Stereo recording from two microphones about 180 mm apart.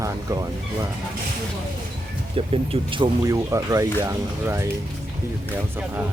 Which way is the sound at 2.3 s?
30° right (ahead or behind).